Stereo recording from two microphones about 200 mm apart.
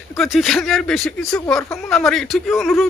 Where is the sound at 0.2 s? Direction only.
Centre (ahead or behind).